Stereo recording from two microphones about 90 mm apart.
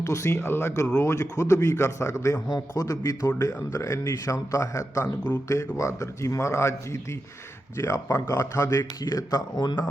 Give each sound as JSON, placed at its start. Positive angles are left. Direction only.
{"t": 0.0, "sound": "a man's voice", "side_deg": 35}
{"t": 5.0, "sound": "speech", "side_deg": 20}
{"t": 5.5, "sound": "a man's voice", "side_deg": 35}